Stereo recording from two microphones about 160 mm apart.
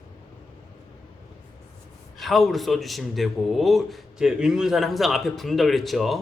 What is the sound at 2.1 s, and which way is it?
A man's voice, centre (ahead or behind).